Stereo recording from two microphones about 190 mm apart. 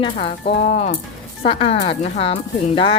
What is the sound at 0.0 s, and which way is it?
A woman's voice, 30° left (ahead or behind).